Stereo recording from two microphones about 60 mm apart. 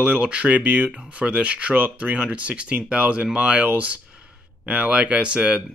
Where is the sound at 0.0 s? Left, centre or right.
Centre.